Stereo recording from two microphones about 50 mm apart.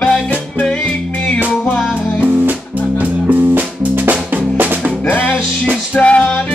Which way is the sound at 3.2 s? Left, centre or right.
Right.